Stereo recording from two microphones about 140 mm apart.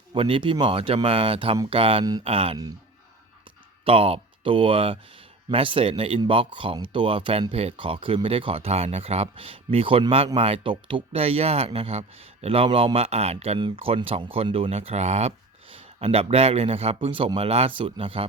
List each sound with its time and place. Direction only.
0.1 s speech: 40° right (ahead or behind)
3.8 s speech: 45° right (ahead or behind)
15.7 s speech: 40° right (ahead or behind)